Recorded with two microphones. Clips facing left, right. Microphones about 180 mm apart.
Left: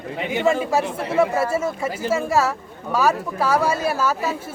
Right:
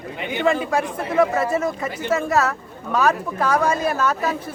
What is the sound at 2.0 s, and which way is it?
Speech, 30° left (ahead or behind).